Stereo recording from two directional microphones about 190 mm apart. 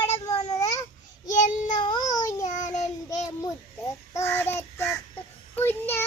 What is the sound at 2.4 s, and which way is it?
Child singing, 40° left (ahead or behind).